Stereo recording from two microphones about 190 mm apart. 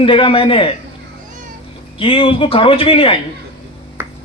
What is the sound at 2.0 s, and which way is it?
A man's voice, 30° left (ahead or behind).